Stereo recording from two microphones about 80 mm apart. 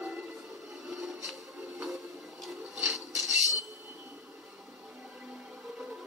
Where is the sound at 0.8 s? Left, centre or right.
Centre.